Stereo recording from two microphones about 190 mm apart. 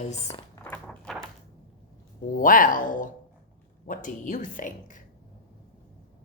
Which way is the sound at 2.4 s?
45° left (ahead or behind).